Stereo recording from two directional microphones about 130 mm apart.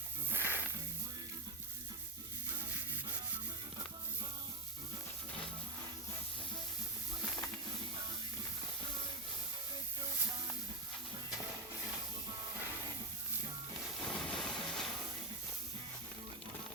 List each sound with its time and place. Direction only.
0.3 s music: 15° right (ahead or behind)
14.0 s vehicle: 5° left (ahead or behind)